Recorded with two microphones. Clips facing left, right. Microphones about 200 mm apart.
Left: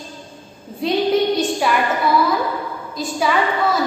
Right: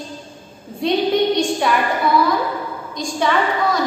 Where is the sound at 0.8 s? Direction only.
Centre (ahead or behind).